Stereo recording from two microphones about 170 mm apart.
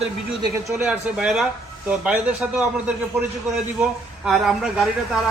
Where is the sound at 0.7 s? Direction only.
10° right (ahead or behind).